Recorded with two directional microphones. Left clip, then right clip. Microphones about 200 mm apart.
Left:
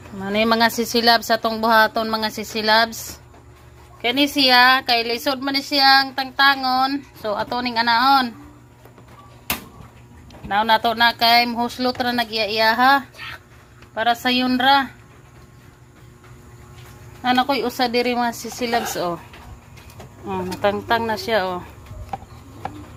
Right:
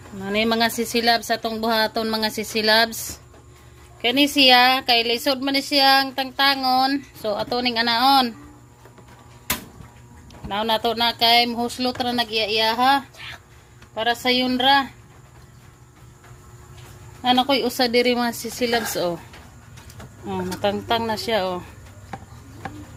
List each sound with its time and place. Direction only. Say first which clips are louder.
0.2 s a woman's voice: left 3 dB; 5° right (ahead or behind); by 8.3 s 25° right (ahead or behind)
10.5 s speech: left 4 dB; 10° right (ahead or behind)
17.2 s a woman's voice: even; 15° right (ahead or behind)
20.2 s speech: left 3 dB; 15° right (ahead or behind)